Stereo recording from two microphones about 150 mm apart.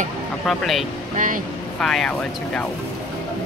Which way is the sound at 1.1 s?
60° right (ahead or behind).